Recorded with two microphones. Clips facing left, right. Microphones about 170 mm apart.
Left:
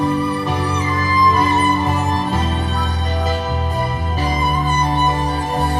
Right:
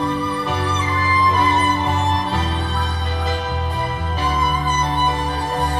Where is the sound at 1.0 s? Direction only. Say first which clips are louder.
Left 2 dB; 40° left (ahead or behind).